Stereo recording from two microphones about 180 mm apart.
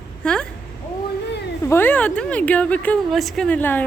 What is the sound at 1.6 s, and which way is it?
A woman's voice, 10° left (ahead or behind).